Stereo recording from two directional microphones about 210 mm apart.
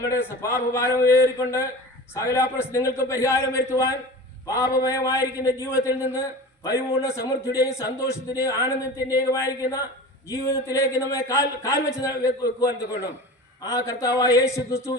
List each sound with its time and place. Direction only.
0.0 s a man's voice: 10° left (ahead or behind)